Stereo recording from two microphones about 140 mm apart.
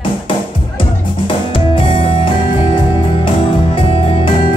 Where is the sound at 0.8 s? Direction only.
35° left (ahead or behind).